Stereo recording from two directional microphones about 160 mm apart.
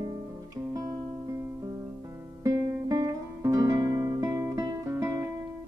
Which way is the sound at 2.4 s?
20° right (ahead or behind).